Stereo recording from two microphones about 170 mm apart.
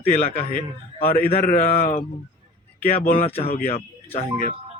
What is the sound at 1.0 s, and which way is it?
Speech, 60° left (ahead or behind).